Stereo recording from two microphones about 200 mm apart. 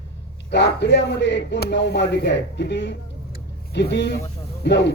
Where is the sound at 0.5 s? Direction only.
60° left (ahead or behind).